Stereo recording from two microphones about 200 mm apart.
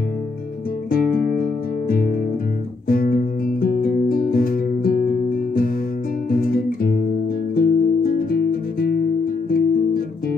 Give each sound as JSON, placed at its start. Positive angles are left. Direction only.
{"t": 0.8, "sound": "music", "side_deg": 45}
{"t": 6.3, "sound": "music", "side_deg": 45}